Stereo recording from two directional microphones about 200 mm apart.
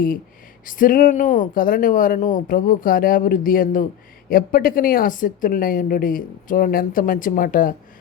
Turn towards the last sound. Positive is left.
turn(degrees=45)  # may be behind; listen again after turning